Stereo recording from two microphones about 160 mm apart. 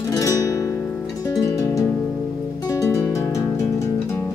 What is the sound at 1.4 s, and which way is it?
Music, 20° left (ahead or behind).